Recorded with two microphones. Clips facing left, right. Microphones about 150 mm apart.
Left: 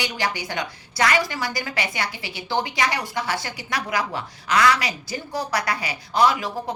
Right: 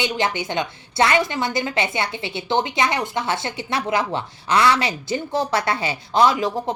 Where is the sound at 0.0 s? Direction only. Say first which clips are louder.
Right 4 dB; 20° right (ahead or behind).